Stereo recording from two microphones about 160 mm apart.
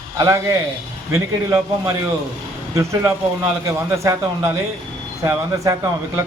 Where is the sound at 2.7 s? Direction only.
20° right (ahead or behind).